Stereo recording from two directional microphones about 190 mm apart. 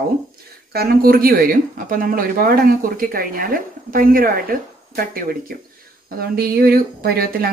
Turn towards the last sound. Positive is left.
turn(degrees=-55)  # may be behind; listen again after turning